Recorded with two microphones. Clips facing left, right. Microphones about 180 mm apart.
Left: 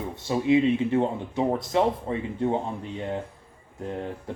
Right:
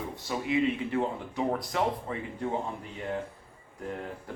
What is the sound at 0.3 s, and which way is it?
Speech, 25° left (ahead or behind).